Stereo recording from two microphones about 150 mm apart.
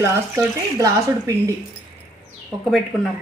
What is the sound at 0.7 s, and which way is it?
Speech, 20° right (ahead or behind).